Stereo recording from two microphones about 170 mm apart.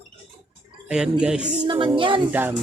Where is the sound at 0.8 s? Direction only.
5° right (ahead or behind).